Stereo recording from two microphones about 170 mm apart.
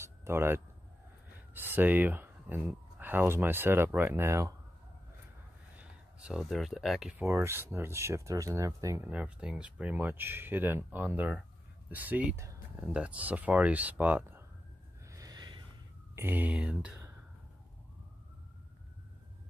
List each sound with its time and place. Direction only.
0.0 s a sound: 15° right (ahead or behind)
1.5 s speech: 10° right (ahead or behind)
5.8 s speech: 5° right (ahead or behind)
15.0 s snort: 20° right (ahead or behind)
16.2 s speech: 10° right (ahead or behind)